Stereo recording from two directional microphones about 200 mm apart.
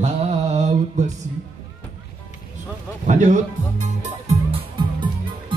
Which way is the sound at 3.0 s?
40° right (ahead or behind).